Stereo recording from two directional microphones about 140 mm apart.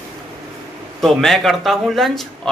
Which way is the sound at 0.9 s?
Centre (ahead or behind).